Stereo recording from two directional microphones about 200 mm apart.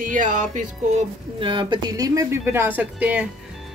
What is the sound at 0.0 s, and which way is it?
Speech, 40° right (ahead or behind).